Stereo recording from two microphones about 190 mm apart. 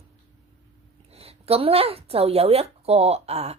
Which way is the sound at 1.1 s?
30° right (ahead or behind).